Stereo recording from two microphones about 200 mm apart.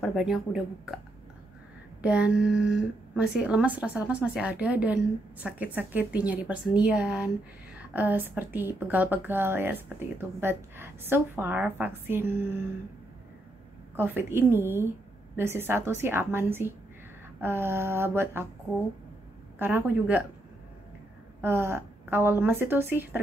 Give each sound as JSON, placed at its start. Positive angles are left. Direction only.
{"t": 0.0, "sound": "speech", "side_deg": 0}
{"t": 2.0, "sound": "a woman's voice", "side_deg": -5}
{"t": 13.9, "sound": "a woman's voice", "side_deg": -10}
{"t": 19.6, "sound": "a woman's voice", "side_deg": -10}
{"t": 21.4, "sound": "a woman's voice", "side_deg": -10}